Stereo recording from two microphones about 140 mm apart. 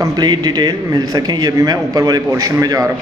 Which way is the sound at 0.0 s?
30° right (ahead or behind).